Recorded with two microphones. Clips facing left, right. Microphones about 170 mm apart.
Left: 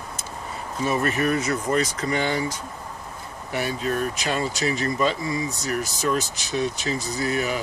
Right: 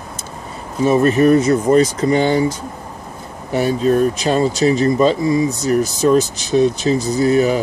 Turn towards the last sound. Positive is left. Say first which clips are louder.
# right 11 dB
turn(degrees=-30)  # may be behind; listen again after turning